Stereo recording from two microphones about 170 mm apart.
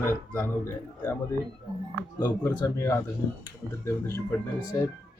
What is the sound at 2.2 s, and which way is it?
Speech, 20° left (ahead or behind).